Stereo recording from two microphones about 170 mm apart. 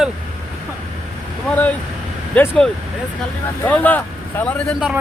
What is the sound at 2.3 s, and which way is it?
Speech, 5° left (ahead or behind).